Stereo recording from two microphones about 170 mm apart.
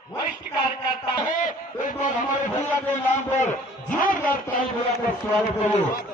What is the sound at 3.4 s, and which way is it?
Speech, 50° left (ahead or behind).